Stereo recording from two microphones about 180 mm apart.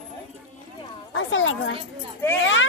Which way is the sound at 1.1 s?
90° left.